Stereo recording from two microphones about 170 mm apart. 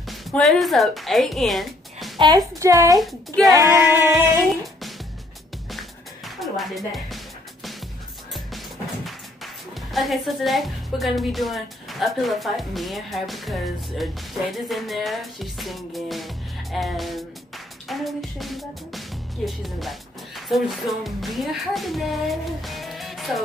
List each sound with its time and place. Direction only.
0.1 s speech: centre (ahead or behind)
2.1 s a woman's voice: 25° right (ahead or behind)
3.5 s female singing: 15° right (ahead or behind)
5.7 s music: centre (ahead or behind)
8.3 s speech: centre (ahead or behind)
17.8 s music: centre (ahead or behind)